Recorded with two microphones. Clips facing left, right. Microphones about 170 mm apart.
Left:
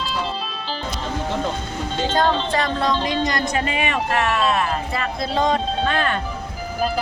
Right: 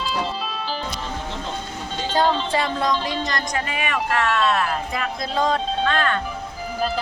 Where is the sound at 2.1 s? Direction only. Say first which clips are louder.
Even; 10° right (ahead or behind).